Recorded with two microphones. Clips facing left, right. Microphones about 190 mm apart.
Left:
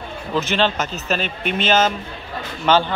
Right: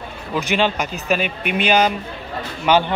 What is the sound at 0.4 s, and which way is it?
A man's voice, 15° right (ahead or behind).